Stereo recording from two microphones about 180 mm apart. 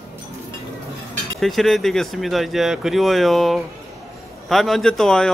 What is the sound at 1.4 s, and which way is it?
Speech, centre (ahead or behind).